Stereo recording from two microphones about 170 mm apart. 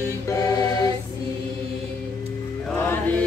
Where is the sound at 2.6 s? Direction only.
10° left (ahead or behind).